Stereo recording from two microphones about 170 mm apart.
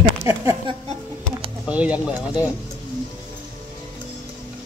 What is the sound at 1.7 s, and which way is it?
Speech, 5° right (ahead or behind).